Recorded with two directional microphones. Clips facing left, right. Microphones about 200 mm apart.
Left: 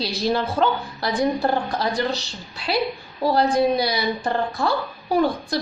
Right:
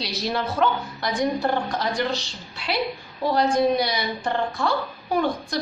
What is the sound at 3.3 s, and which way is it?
A woman's voice, 35° left (ahead or behind).